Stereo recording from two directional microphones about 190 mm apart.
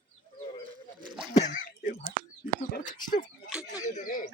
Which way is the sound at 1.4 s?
45° left (ahead or behind).